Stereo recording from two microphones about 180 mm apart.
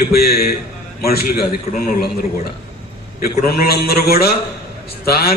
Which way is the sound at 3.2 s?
55° left (ahead or behind).